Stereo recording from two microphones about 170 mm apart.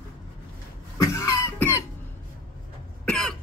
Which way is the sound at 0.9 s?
20° left (ahead or behind).